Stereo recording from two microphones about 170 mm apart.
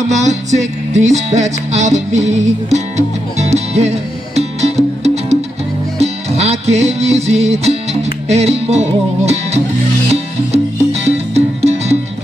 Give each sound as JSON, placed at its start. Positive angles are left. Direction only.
{"t": 0.1, "sound": "music", "side_deg": -45}